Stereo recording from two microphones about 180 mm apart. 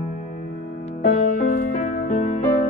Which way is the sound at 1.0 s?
50° left (ahead or behind).